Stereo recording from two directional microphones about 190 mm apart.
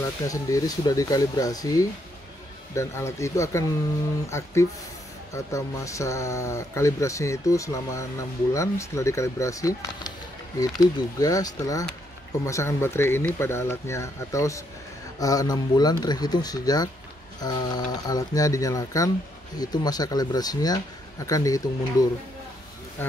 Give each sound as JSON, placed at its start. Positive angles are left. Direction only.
{"t": 0.0, "sound": "speech", "side_deg": 15}